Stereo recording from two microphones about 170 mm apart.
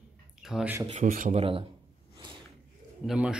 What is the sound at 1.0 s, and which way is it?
Speech, 50° right (ahead or behind).